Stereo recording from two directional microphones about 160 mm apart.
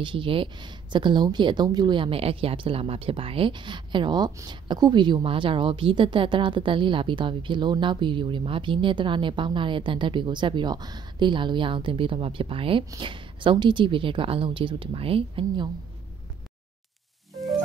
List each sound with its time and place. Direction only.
0.0 s speech: 30° right (ahead or behind)